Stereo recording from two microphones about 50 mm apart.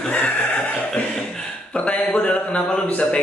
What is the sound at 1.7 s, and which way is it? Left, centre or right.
A man's voice, left.